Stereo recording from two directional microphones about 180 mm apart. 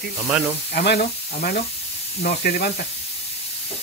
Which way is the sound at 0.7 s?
55° left (ahead or behind).